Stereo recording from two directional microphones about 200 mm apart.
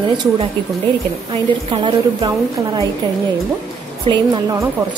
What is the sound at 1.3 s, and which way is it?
A woman's voice, 25° right (ahead or behind).